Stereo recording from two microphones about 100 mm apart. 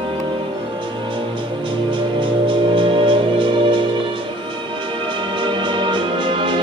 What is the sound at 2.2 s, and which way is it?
Music, 55° right (ahead or behind).